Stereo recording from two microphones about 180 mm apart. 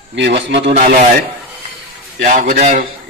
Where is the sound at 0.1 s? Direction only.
80° right.